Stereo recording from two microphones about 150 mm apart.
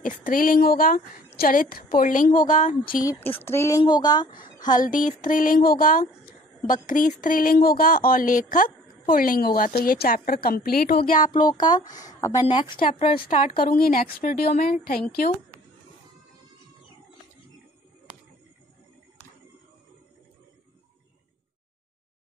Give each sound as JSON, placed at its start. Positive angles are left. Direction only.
{"t": 0.2, "sound": "speech", "side_deg": 70}
{"t": 3.0, "sound": "speech", "side_deg": 20}
{"t": 3.8, "sound": "a woman's voice", "side_deg": 30}
{"t": 4.8, "sound": "speech", "side_deg": 65}
{"t": 11.3, "sound": "a woman's voice", "side_deg": 30}
{"t": 12.4, "sound": "speech", "side_deg": 35}
{"t": 12.7, "sound": "speech", "side_deg": 70}
{"t": 13.2, "sound": "speech", "side_deg": 40}
{"t": 13.5, "sound": "speech", "side_deg": 80}